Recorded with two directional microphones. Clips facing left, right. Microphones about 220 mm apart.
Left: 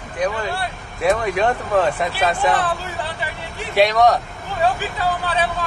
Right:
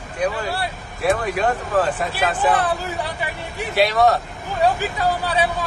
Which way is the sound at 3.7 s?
5° right (ahead or behind).